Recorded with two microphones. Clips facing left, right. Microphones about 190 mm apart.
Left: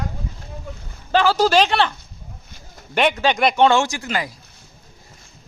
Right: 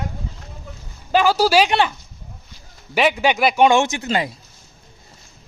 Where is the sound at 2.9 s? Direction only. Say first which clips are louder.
Right 1 dB; 5° right (ahead or behind); by 4.4 s 25° right (ahead or behind).